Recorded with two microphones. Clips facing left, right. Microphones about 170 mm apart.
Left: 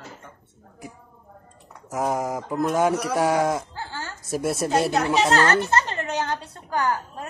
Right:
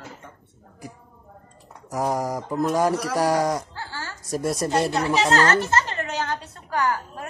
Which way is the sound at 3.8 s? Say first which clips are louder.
Left 1 dB; 20° left (ahead or behind).